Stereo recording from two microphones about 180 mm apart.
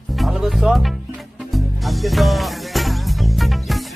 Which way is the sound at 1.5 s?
Centre (ahead or behind).